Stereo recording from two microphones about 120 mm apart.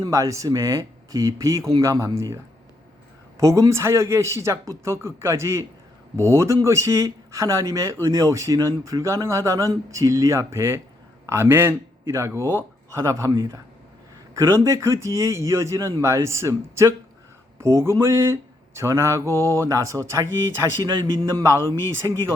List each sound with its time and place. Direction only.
0.0 s a man's voice: 25° right (ahead or behind)